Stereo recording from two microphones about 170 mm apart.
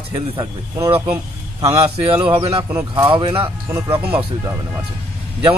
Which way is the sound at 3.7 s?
15° right (ahead or behind).